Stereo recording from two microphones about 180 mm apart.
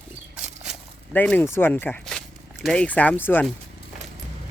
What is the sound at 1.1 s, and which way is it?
Speech, 10° left (ahead or behind).